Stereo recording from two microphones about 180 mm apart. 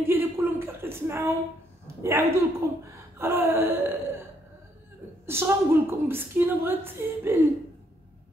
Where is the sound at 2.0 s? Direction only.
15° right (ahead or behind).